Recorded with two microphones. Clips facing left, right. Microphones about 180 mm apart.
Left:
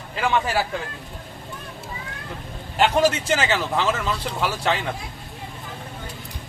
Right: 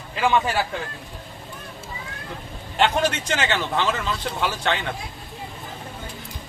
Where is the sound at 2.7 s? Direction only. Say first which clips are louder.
Left 2 dB; 5° left (ahead or behind).